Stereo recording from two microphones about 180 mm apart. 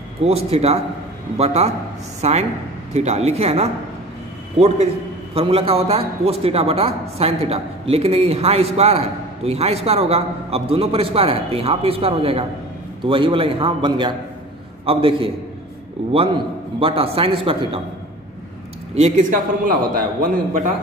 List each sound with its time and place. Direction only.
0.2 s a man's voice: 35° right (ahead or behind)
18.9 s a man's voice: 40° right (ahead or behind)